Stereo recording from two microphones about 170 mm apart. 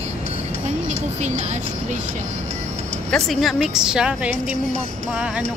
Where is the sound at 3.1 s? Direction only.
Centre (ahead or behind).